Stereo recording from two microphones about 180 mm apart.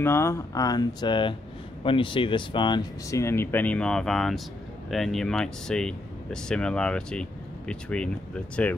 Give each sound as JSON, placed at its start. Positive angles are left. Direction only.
{"t": 0.0, "sound": "speech", "side_deg": 15}